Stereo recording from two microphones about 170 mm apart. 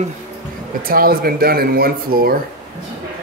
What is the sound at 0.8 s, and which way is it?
Speech, 60° right (ahead or behind).